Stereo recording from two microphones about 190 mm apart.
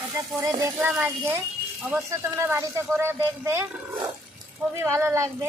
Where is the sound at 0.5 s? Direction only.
15° right (ahead or behind).